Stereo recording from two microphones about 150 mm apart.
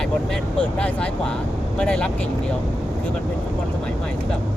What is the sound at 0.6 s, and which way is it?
Speech, 10° left (ahead or behind).